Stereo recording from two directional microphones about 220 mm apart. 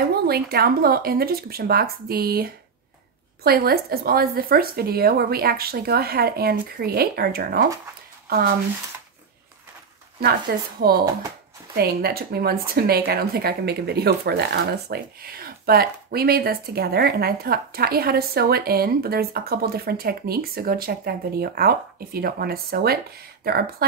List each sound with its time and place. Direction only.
0.1 s a woman's voice: 45° right (ahead or behind)
10.5 s a woman's voice: 45° right (ahead or behind)
11.7 s a woman's voice: 45° right (ahead or behind)